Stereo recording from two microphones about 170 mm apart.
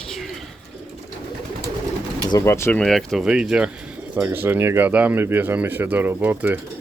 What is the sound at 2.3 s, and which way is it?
Speech, 15° left (ahead or behind).